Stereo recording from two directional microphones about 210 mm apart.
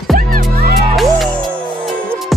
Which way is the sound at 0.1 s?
40° right (ahead or behind).